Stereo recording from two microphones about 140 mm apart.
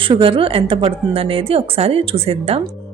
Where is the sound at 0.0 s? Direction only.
40° right (ahead or behind).